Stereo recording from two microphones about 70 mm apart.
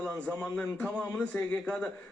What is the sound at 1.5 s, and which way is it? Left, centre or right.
Speech, centre.